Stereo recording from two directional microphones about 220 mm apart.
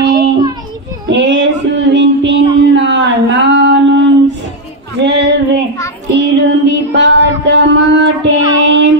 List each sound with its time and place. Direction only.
0.0 s child singing: 15° right (ahead or behind)
1.1 s child singing: 55° right (ahead or behind)
2.6 s a sound: 55° right (ahead or behind)
5.0 s female singing: 50° right (ahead or behind)
6.3 s music: 50° right (ahead or behind)